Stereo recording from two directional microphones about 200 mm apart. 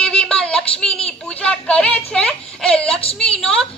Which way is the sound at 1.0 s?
5° left (ahead or behind).